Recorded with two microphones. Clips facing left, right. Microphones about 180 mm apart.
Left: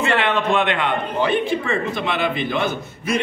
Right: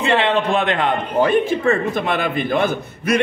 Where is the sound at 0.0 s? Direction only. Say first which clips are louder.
Right 2 dB; 25° right (ahead or behind).